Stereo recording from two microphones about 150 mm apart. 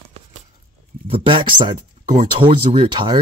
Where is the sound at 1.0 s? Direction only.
35° right (ahead or behind).